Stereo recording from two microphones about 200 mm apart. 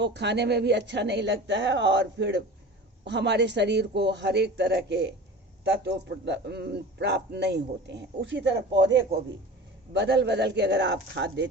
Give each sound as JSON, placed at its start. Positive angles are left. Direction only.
{"t": 0.0, "sound": "a man's voice", "side_deg": -60}